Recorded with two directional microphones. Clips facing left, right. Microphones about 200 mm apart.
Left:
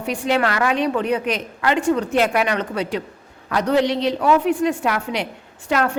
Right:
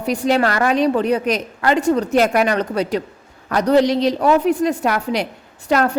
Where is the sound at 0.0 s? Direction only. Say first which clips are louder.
Right 3 dB; 40° right (ahead or behind).